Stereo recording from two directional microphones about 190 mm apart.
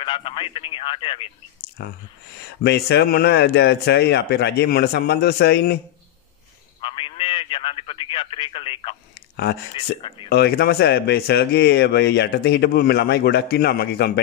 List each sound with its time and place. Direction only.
0.0 s speech: 25° left (ahead or behind)
1.8 s speech: 55° left (ahead or behind)
6.8 s speech: 25° left (ahead or behind)
10.3 s speech: 60° left (ahead or behind)